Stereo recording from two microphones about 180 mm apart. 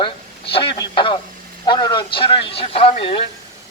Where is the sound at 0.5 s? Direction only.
25° left (ahead or behind).